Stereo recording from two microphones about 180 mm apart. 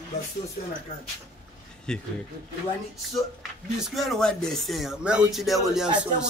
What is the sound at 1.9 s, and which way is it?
Speech, 5° left (ahead or behind).